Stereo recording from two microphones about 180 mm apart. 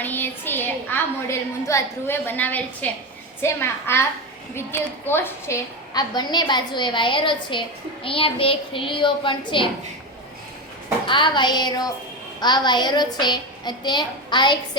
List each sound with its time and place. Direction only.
0.0 s a woman's voice: 10° left (ahead or behind); by 9.6 s 25° left (ahead or behind)
11.0 s a woman's voice: 25° left (ahead or behind)